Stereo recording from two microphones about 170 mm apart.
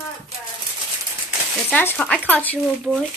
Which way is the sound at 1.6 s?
10° left (ahead or behind).